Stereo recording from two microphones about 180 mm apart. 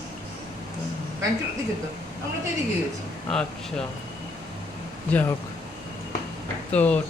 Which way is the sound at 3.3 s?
5° left (ahead or behind).